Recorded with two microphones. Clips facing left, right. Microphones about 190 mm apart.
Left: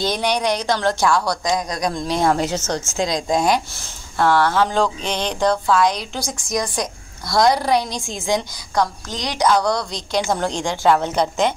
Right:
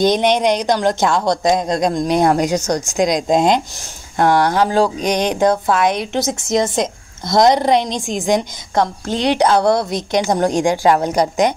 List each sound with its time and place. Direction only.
0.0 s a woman's voice: 20° right (ahead or behind)
5.4 s a woman's voice: 50° right (ahead or behind)
6.1 s a woman's voice: 25° right (ahead or behind)
9.0 s speech: 60° right (ahead or behind)
9.5 s a woman's voice: 25° right (ahead or behind)